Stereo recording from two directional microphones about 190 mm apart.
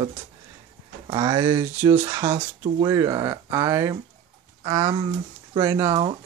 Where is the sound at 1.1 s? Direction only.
20° right (ahead or behind).